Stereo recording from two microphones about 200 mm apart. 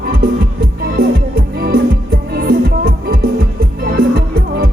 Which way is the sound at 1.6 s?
50° right (ahead or behind).